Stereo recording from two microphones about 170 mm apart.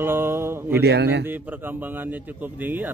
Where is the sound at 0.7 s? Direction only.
70° right (ahead or behind).